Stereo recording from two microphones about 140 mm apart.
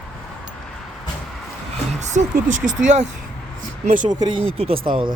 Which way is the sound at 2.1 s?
60° right (ahead or behind).